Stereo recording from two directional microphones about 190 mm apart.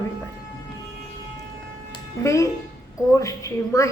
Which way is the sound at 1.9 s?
15° left (ahead or behind).